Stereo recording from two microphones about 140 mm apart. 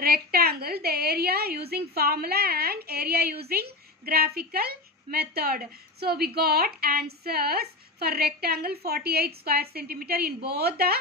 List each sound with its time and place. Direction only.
0.0 s a woman's voice: 90° right